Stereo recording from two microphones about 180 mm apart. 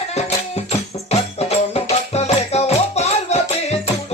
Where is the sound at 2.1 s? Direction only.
35° left (ahead or behind).